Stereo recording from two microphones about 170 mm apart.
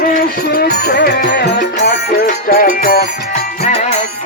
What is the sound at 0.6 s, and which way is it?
Music, 70° left (ahead or behind).